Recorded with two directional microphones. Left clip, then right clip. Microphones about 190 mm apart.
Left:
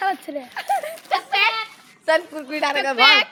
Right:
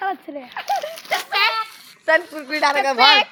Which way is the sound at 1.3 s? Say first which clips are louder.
Even; 15° right (ahead or behind).